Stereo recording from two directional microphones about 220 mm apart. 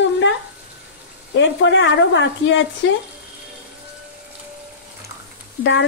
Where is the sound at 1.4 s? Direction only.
55° left (ahead or behind).